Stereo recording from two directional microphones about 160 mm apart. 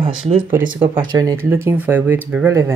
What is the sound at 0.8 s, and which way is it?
Speech, 20° right (ahead or behind).